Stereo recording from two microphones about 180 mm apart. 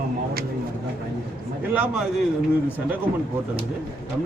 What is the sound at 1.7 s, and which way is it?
Speech, 10° right (ahead or behind).